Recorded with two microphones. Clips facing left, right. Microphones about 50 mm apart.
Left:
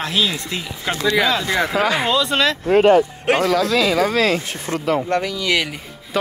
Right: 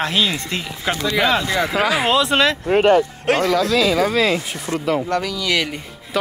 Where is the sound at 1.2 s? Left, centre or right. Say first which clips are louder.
Right 3 dB; right.